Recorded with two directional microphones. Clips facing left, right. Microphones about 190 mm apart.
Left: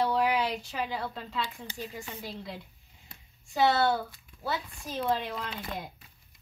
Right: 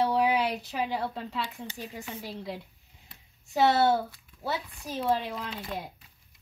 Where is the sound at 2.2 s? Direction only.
10° right (ahead or behind).